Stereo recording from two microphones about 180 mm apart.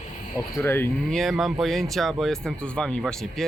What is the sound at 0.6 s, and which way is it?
Speech, 15° left (ahead or behind).